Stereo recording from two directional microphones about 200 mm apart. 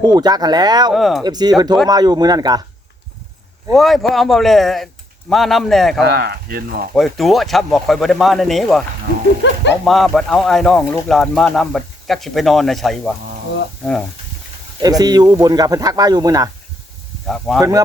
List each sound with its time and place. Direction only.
0.0 s speech: 20° right (ahead or behind)
0.9 s speech: centre (ahead or behind)
1.2 s speech: 20° right (ahead or behind)
3.8 s speech: centre (ahead or behind)
6.1 s speech: 50° right (ahead or behind)
6.9 s speech: centre (ahead or behind)
9.4 s speech: 65° left (ahead or behind)
9.8 s speech: centre (ahead or behind)
14.8 s speech: 20° right (ahead or behind)
17.2 s speech: 5° left (ahead or behind)
17.6 s speech: 15° right (ahead or behind)